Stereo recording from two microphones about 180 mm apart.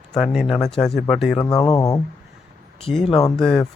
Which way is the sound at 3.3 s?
5° left (ahead or behind).